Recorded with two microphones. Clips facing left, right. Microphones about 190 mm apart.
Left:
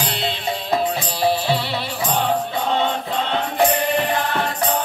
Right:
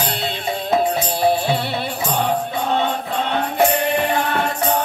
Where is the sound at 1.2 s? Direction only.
50° right (ahead or behind).